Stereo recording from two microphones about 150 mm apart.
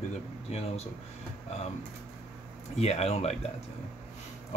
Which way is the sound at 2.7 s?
45° left (ahead or behind).